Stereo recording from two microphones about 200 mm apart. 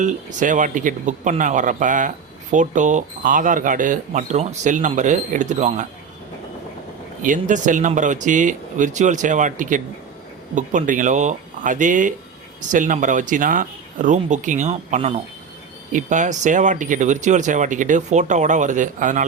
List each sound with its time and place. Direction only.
0.0 s speech: 40° right (ahead or behind)
7.2 s speech: 40° right (ahead or behind)